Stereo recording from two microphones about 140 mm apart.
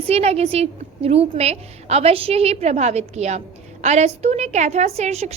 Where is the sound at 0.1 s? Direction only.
50° right (ahead or behind).